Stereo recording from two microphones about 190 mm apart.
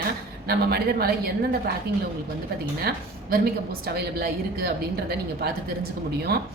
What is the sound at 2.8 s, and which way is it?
A woman's voice, 55° right (ahead or behind).